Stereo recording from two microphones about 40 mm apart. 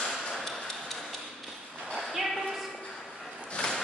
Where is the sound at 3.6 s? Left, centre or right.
Left.